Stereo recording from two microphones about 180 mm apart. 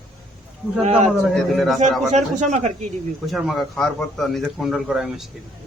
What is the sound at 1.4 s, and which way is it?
Speech, centre (ahead or behind).